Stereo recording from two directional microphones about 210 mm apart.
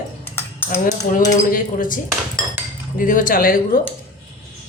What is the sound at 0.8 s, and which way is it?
Speech, 35° left (ahead or behind).